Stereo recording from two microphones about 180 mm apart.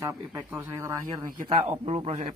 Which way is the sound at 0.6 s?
15° right (ahead or behind).